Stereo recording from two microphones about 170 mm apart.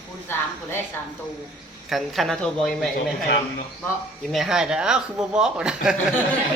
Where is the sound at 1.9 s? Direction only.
Centre (ahead or behind).